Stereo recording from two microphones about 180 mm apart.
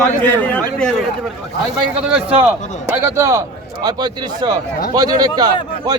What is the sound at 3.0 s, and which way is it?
A man's voice, 15° right (ahead or behind).